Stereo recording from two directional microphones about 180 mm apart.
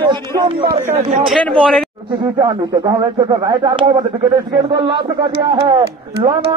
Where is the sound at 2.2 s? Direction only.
25° right (ahead or behind).